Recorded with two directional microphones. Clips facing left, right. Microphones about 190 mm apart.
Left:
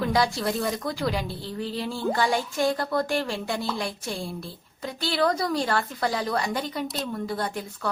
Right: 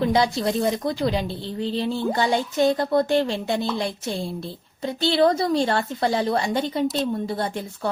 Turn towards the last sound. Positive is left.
turn(degrees=-25)  # may be behind; listen again after turning